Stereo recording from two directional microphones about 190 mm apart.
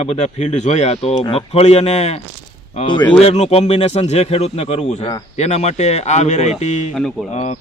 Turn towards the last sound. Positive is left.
turn(degrees=35)  # may be behind; listen again after turning